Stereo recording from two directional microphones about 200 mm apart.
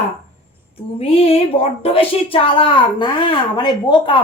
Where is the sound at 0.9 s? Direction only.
30° left (ahead or behind).